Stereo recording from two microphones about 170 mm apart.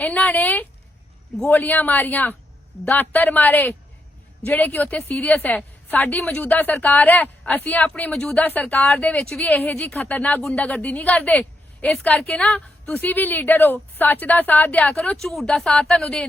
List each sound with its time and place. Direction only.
0.0 s speech: 10° left (ahead or behind)